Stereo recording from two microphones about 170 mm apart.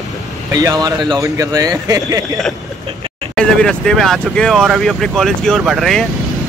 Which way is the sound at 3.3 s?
5° left (ahead or behind).